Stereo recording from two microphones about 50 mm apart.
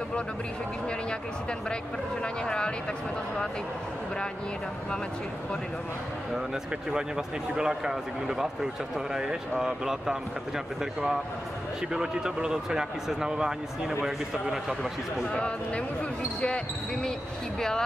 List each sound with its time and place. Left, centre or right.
2.4 s speech: centre
6.9 s a man's voice: centre
15.3 s speech: left